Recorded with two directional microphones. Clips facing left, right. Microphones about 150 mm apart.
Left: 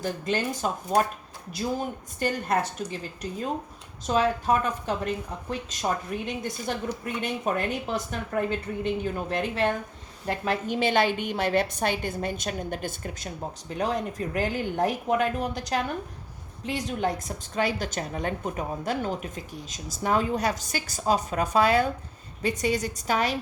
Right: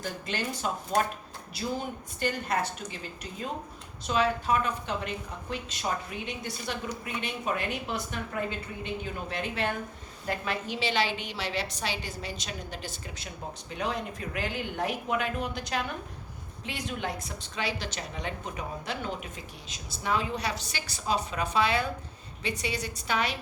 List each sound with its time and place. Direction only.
0.0 s speech: 40° left (ahead or behind)
2.1 s speech: 45° left (ahead or behind)
4.0 s speech: 45° left (ahead or behind)